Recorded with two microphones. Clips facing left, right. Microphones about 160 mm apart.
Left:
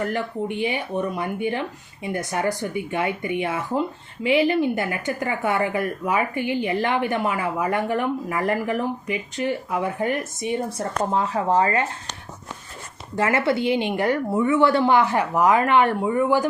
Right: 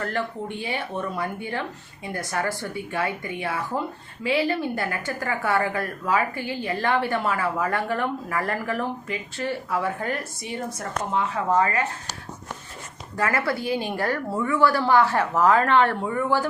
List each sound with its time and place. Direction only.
0.0 s speech: 15° left (ahead or behind)
10.8 s speech: 35° left (ahead or behind)
13.1 s speech: 25° left (ahead or behind)